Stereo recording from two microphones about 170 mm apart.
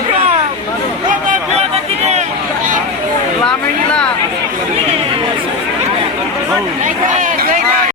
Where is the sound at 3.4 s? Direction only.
5° left (ahead or behind).